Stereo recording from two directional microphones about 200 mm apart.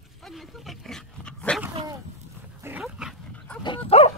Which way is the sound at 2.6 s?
5° right (ahead or behind).